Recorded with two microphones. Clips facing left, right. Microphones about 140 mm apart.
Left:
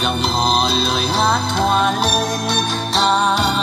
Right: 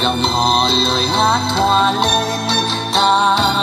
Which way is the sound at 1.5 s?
25° right (ahead or behind).